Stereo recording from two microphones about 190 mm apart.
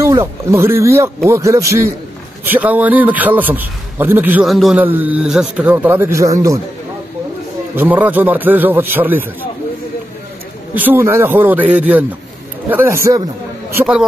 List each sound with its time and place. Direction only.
0.0 s a man's voice: 15° right (ahead or behind)
7.7 s a man's voice: 10° right (ahead or behind)
10.7 s a man's voice: 10° right (ahead or behind)
13.7 s a man's voice: 5° right (ahead or behind)